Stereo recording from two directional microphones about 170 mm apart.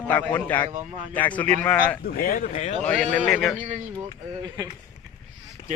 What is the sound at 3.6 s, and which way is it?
Speech, 45° right (ahead or behind).